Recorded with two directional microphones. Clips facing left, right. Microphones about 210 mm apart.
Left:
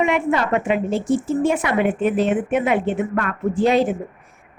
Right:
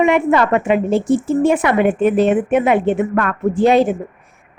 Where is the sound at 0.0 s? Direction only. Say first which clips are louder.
Right 5 dB; 60° right (ahead or behind).